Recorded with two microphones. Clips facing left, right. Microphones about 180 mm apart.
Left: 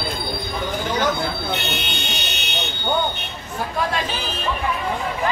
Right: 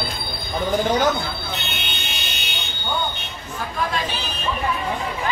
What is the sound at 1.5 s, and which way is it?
Buzzer, 75° left (ahead or behind).